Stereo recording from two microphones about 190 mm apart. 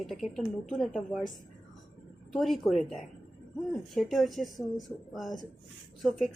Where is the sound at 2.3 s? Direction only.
Centre (ahead or behind).